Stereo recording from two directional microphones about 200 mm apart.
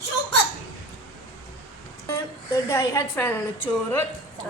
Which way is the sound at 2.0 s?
15° left (ahead or behind).